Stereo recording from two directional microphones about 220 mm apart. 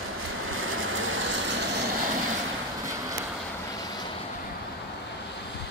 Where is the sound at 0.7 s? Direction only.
60° right (ahead or behind).